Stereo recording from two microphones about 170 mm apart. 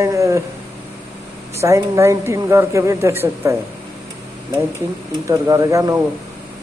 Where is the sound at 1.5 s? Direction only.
15° right (ahead or behind).